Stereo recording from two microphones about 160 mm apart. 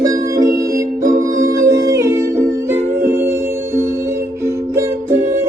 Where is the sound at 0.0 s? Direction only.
20° right (ahead or behind).